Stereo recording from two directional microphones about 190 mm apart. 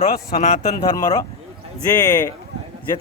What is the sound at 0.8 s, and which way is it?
Speech, 20° left (ahead or behind).